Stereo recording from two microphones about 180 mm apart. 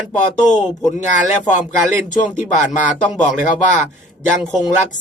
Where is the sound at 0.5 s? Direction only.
40° left (ahead or behind).